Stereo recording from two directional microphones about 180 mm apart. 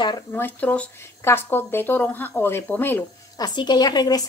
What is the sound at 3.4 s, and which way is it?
Speech, 25° left (ahead or behind).